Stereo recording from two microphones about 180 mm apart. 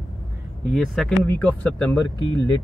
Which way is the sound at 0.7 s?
Centre (ahead or behind).